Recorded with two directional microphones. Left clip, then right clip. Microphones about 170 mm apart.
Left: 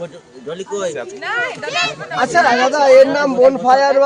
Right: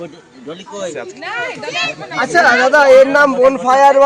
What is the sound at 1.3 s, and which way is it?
Speech, 45° left (ahead or behind).